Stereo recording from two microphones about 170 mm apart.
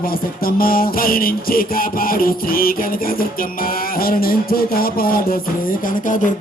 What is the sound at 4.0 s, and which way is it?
Music, 60° left (ahead or behind).